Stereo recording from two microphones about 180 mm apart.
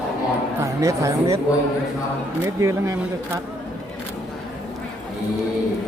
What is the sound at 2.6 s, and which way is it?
Speech, 15° right (ahead or behind).